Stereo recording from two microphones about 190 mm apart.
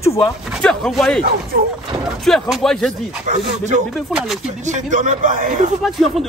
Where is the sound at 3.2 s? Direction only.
40° right (ahead or behind).